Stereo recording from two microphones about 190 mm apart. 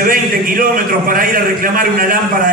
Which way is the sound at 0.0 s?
50° right (ahead or behind).